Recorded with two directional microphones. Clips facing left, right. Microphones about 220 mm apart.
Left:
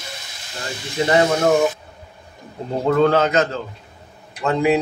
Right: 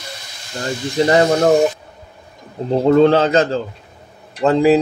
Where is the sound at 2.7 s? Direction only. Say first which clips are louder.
Right 5 dB; 30° right (ahead or behind).